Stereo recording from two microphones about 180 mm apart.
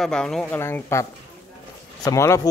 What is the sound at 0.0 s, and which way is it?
Speech, 5° left (ahead or behind).